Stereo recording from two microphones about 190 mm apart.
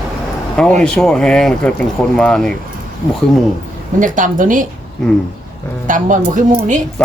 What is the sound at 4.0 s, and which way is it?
Speech, 45° right (ahead or behind).